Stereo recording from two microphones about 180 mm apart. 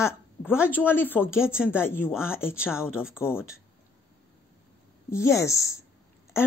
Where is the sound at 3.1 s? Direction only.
15° left (ahead or behind).